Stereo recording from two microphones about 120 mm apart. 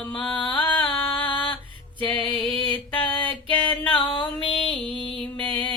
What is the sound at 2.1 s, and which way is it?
Music, centre (ahead or behind).